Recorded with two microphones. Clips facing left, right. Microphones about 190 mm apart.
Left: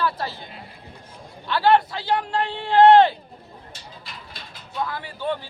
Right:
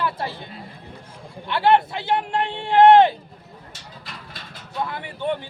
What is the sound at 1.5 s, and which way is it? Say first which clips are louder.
Speech: even; 25° right (ahead or behind).